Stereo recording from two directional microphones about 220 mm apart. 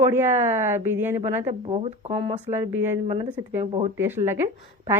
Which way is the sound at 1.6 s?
30° right (ahead or behind).